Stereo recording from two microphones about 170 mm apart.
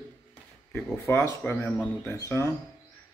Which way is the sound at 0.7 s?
10° left (ahead or behind).